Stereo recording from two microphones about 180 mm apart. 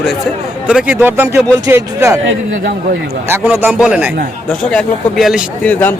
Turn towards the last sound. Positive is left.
turn(degrees=10)  # may be behind; listen again after turning